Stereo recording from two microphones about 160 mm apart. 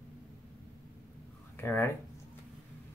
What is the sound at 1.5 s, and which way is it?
Speech, 15° left (ahead or behind).